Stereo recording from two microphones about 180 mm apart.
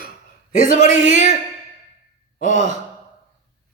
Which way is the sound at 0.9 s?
85° right.